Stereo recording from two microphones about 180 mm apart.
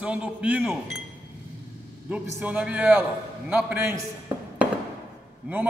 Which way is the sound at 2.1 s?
10° right (ahead or behind).